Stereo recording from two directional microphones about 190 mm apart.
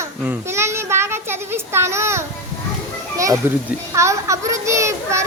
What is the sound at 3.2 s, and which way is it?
Speech, 15° right (ahead or behind).